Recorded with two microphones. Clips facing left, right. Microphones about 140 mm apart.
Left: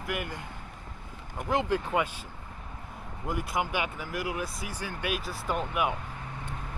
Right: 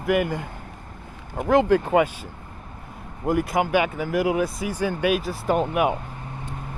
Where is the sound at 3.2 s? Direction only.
65° right (ahead or behind); by 4.4 s 90° right.